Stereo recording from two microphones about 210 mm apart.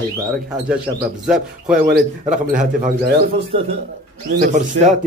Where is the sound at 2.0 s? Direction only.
40° right (ahead or behind).